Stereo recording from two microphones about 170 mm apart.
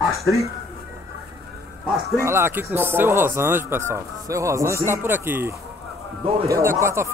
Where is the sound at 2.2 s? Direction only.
15° right (ahead or behind).